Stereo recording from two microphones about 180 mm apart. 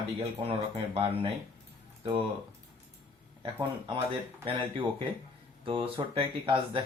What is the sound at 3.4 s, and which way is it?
Speech, 25° right (ahead or behind).